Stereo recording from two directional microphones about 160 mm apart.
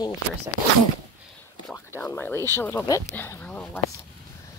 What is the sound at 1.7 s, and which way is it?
Speech, 15° left (ahead or behind).